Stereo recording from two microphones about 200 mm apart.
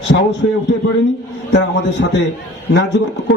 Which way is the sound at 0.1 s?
50° left (ahead or behind).